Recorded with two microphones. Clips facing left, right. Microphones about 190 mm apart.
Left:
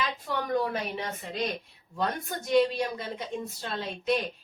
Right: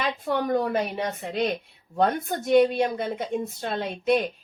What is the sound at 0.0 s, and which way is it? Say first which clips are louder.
A woman's voice: right 6 dB; 50° right (ahead or behind).